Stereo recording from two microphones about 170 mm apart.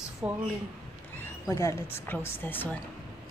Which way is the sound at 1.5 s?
15° left (ahead or behind).